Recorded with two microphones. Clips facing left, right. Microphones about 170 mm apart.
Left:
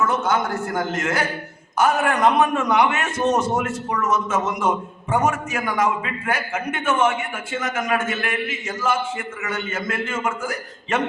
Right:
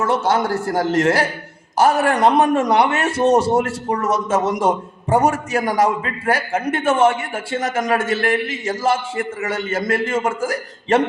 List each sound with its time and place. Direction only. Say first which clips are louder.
0.0 s a man's voice: right 3 dB; 35° right (ahead or behind)